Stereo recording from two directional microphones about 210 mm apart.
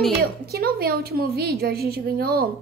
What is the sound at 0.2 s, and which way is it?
A woman's voice, 45° right (ahead or behind).